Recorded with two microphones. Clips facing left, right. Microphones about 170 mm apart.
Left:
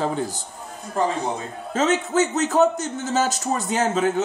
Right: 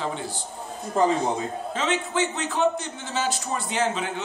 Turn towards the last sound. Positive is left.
turn(degrees=45)  # may be behind; listen again after turning